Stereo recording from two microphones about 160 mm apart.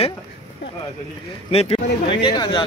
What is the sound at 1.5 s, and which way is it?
Speech, 40° left (ahead or behind).